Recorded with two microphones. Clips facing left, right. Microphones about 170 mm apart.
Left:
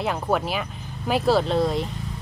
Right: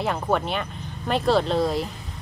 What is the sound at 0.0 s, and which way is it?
Speech, centre (ahead or behind).